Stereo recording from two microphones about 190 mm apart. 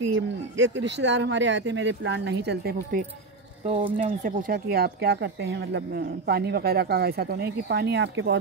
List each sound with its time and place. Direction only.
0.1 s speech: 75° right (ahead or behind)
3.6 s speech: 25° right (ahead or behind)
4.0 s speech: 45° right (ahead or behind); by 8.4 s 70° right (ahead or behind)